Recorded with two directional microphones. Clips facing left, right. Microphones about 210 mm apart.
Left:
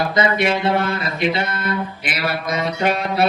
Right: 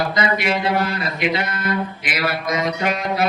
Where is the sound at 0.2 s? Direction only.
25° left (ahead or behind).